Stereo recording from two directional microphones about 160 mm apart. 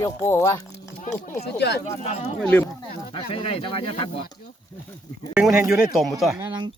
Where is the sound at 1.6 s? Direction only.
90° left.